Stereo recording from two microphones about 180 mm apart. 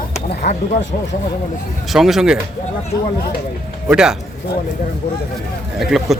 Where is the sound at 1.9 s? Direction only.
Centre (ahead or behind).